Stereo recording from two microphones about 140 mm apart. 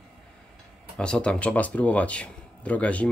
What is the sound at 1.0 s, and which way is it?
A man's voice, 5° left (ahead or behind).